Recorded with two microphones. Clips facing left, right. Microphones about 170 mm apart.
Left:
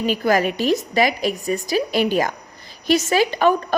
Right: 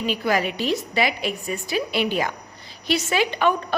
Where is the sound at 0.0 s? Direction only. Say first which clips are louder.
Left 4 dB; 45° left (ahead or behind).